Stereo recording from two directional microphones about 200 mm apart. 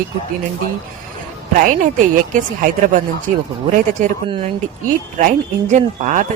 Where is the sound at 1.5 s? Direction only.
40° right (ahead or behind).